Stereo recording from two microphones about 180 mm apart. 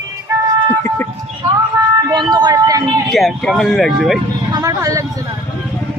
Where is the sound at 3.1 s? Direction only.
Centre (ahead or behind).